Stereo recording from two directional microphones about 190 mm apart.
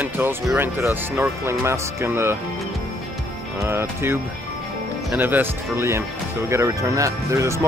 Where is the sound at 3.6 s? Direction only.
10° right (ahead or behind).